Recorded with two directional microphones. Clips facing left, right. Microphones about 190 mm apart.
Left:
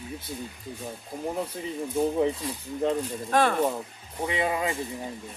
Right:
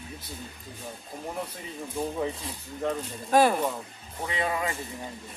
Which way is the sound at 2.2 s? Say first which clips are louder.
Left 5 dB; 25° left (ahead or behind).